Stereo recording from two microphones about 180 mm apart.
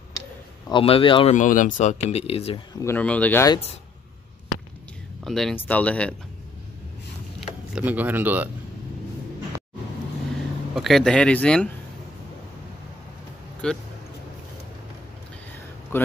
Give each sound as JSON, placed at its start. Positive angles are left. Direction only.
{"t": 0.7, "sound": "speech", "side_deg": 30}
{"t": 1.3, "sound": "speech", "side_deg": 45}
{"t": 2.8, "sound": "speech", "side_deg": 10}
{"t": 5.2, "sound": "speech", "side_deg": 0}
{"t": 7.7, "sound": "speech", "side_deg": -10}
{"t": 10.7, "sound": "speech", "side_deg": 0}
{"t": 13.6, "sound": "speech", "side_deg": 5}
{"t": 15.9, "sound": "speech", "side_deg": 10}